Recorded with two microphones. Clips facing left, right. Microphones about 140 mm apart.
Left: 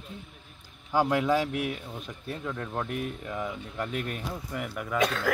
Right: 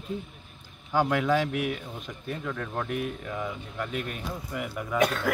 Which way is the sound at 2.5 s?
15° left (ahead or behind).